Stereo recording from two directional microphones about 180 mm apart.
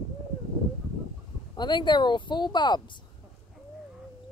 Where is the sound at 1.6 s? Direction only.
25° left (ahead or behind).